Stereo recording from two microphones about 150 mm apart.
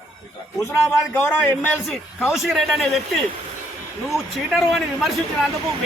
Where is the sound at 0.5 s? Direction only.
20° left (ahead or behind).